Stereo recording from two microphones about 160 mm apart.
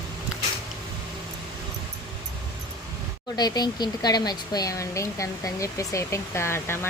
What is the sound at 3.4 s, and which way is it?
Speech, 25° left (ahead or behind).